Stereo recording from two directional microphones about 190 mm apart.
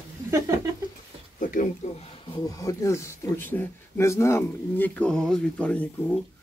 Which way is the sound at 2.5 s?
15° left (ahead or behind).